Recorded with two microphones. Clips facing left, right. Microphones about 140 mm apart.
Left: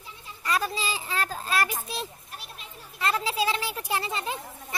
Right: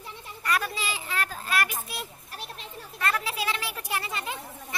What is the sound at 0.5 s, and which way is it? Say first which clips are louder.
A child's voice: left 1 dB; 30° left (ahead or behind).